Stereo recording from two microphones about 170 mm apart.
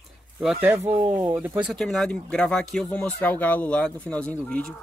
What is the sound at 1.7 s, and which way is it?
Speech, centre (ahead or behind).